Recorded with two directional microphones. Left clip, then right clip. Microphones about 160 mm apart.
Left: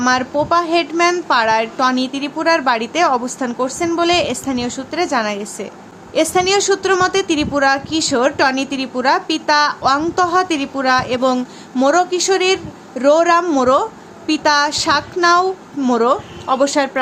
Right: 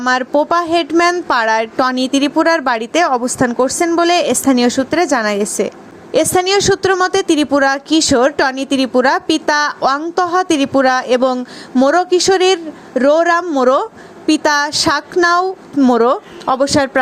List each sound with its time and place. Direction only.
0.0 s a woman's voice: 45° right (ahead or behind)
11.3 s speech: 25° right (ahead or behind)
11.9 s a woman's voice: 35° right (ahead or behind)